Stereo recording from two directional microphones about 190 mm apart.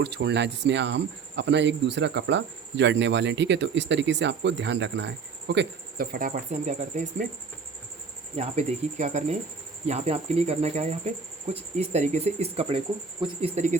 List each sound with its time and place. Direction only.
0.0 s speech: 60° right (ahead or behind)
6.1 s speech: 40° right (ahead or behind)
8.4 s speech: 35° right (ahead or behind)